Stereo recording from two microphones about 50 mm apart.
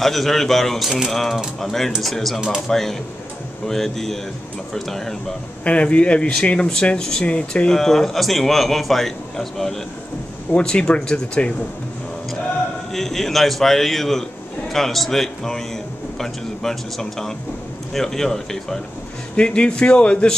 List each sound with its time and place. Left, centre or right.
0.0 s a man's voice: centre
5.6 s speech: left
7.7 s a man's voice: centre
10.5 s speech: centre
12.9 s a man's voice: centre
19.3 s speech: left